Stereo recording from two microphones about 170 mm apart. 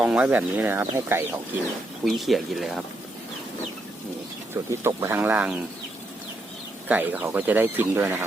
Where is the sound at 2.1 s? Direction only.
Centre (ahead or behind).